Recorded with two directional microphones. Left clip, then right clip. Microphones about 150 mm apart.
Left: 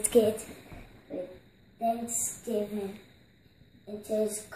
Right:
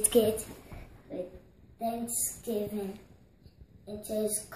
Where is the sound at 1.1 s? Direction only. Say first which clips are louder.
Left 1 dB; centre (ahead or behind).